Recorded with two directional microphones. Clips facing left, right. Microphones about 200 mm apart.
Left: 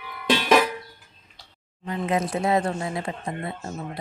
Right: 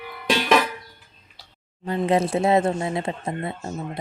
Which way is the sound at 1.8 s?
30° right (ahead or behind).